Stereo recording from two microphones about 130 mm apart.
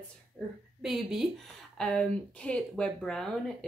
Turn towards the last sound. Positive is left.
turn(degrees=5)  # may be behind; listen again after turning